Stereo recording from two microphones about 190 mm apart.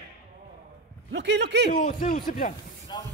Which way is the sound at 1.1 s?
65° right (ahead or behind).